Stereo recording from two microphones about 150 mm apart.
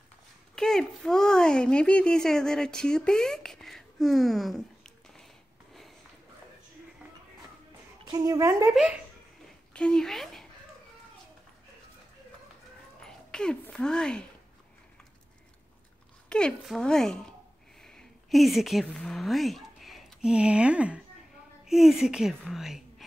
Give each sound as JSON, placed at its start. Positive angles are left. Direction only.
{"t": 0.6, "sound": "speech", "side_deg": 5}
{"t": 8.1, "sound": "a woman's voice", "side_deg": -25}
{"t": 9.8, "sound": "a woman's voice", "side_deg": 5}
{"t": 13.0, "sound": "speech", "side_deg": 5}
{"t": 16.3, "sound": "a woman's voice", "side_deg": 5}